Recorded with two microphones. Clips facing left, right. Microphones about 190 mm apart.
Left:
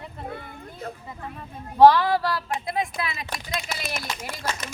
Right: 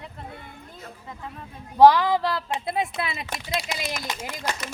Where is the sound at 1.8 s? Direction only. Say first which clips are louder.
Even; 15° right (ahead or behind).